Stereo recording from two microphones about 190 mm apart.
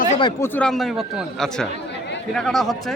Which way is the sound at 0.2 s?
25° left (ahead or behind).